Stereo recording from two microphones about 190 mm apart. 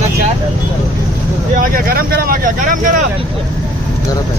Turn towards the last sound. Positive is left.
turn(degrees=-45)  # may be behind; listen again after turning